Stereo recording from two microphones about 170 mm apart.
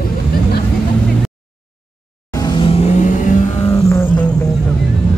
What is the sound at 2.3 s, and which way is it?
Vehicle, 25° left (ahead or behind).